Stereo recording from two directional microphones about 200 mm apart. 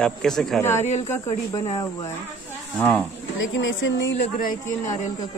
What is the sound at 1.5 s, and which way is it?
Speech, 25° left (ahead or behind).